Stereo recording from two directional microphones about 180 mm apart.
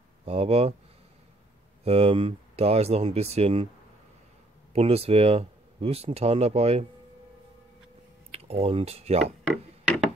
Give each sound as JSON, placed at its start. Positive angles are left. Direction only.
{"t": 0.2, "sound": "speech", "side_deg": -35}
{"t": 1.9, "sound": "speech", "side_deg": -35}
{"t": 4.7, "sound": "speech", "side_deg": -35}
{"t": 8.3, "sound": "speech", "side_deg": -35}
{"t": 9.5, "sound": "a sound", "side_deg": -5}